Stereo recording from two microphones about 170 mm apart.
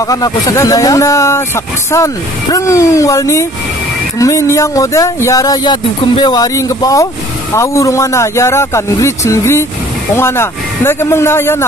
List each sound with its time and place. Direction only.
0.0 s speech: 20° left (ahead or behind)